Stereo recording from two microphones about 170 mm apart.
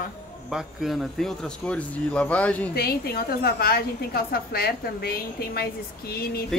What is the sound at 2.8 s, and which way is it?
A woman's voice, 65° left (ahead or behind).